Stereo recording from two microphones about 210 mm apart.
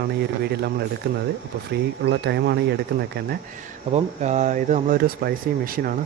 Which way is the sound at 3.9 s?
35° right (ahead or behind).